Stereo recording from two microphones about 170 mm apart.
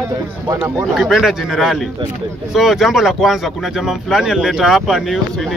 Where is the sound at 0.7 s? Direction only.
Centre (ahead or behind).